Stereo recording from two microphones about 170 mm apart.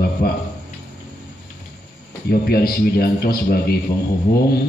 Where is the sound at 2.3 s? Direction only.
65° left (ahead or behind).